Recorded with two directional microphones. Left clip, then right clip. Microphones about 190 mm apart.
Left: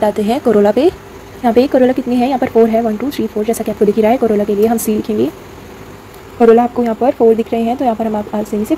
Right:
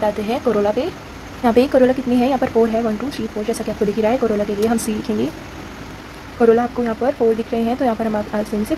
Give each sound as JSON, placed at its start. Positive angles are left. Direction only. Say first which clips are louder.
{"t": 0.0, "sound": "speech", "louder": "left 5 dB", "side_deg": 30}
{"t": 1.4, "sound": "speech", "louder": "left 3 dB", "side_deg": 15}
{"t": 6.5, "sound": "speech", "louder": "left 6 dB", "side_deg": 25}